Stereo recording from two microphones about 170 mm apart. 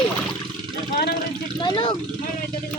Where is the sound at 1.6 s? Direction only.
30° left (ahead or behind).